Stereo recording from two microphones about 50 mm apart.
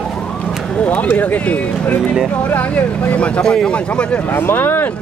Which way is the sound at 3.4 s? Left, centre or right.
Centre.